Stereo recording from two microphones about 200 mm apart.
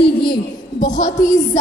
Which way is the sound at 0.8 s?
40° left (ahead or behind).